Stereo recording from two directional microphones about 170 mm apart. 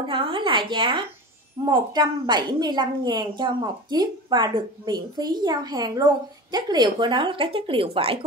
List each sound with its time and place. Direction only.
0.1 s a woman's voice: 30° right (ahead or behind)